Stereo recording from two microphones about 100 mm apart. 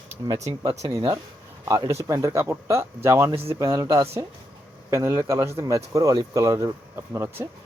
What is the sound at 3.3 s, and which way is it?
Speech, 70° right (ahead or behind).